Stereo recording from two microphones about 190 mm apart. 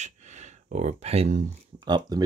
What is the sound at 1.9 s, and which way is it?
Speech, 20° right (ahead or behind).